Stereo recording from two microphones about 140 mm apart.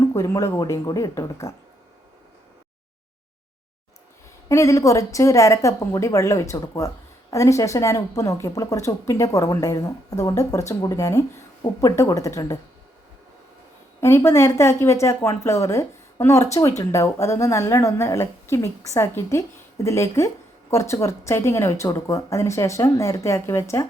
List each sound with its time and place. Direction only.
0.0 s a woman's voice: 20° left (ahead or behind)
4.4 s a woman's voice: 25° left (ahead or behind)
14.0 s a woman's voice: 20° left (ahead or behind)